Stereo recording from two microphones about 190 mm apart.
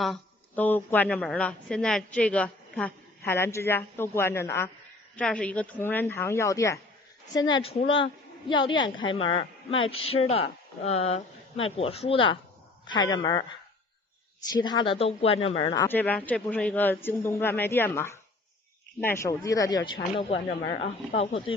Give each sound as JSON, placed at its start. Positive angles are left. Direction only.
{"t": 0.0, "sound": "a woman's voice", "side_deg": 5}
{"t": 14.5, "sound": "a woman's voice", "side_deg": 25}
{"t": 15.8, "sound": "a woman's voice", "side_deg": 10}